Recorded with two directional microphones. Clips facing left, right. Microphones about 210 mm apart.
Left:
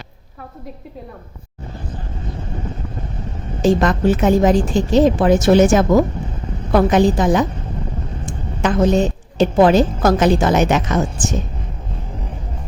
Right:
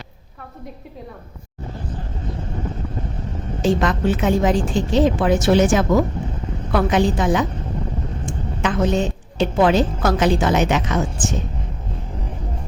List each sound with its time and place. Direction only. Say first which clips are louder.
3.6 s a woman's voice: left 4 dB; 40° left (ahead or behind)